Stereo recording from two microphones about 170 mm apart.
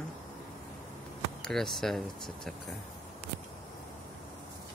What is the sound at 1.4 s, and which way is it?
Speech, centre (ahead or behind).